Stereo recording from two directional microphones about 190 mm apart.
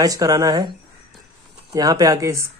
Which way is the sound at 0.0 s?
20° right (ahead or behind).